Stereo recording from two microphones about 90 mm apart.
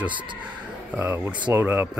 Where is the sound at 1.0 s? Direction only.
20° right (ahead or behind).